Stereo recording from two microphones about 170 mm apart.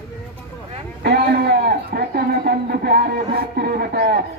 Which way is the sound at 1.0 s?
70° right (ahead or behind).